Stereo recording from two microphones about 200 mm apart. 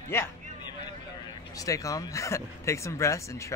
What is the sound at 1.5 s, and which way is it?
Speech, 15° left (ahead or behind).